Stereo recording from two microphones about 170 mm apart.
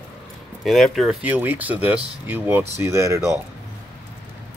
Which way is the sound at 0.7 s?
Centre (ahead or behind).